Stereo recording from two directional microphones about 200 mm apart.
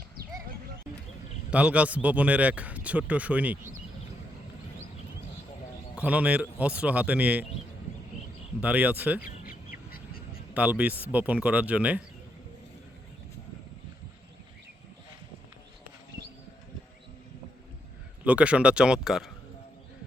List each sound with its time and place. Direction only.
1.5 s speech: 5° right (ahead or behind)
6.0 s speech: 5° right (ahead or behind)
8.6 s speech: 5° right (ahead or behind)
9.2 s bird: 45° left (ahead or behind)
10.5 s speech: 5° right (ahead or behind)
18.2 s a man's voice: 5° right (ahead or behind)